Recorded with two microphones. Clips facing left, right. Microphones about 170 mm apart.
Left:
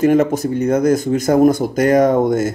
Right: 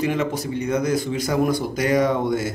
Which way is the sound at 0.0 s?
45° left (ahead or behind).